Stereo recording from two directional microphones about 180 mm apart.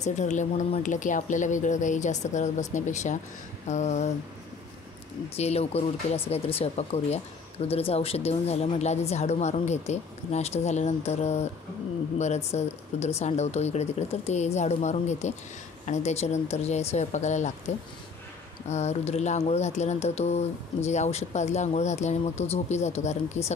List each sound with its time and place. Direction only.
0.0 s speech: 40° left (ahead or behind)
5.3 s speech: 35° left (ahead or behind)